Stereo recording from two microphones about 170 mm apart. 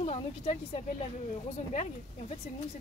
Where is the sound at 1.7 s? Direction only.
40° left (ahead or behind).